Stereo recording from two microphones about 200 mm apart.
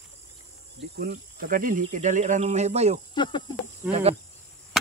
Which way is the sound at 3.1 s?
20° left (ahead or behind).